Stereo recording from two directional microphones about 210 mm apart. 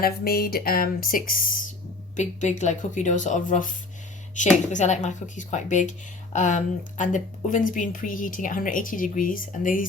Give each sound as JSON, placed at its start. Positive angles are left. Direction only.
{"t": 0.0, "sound": "a woman's voice", "side_deg": 45}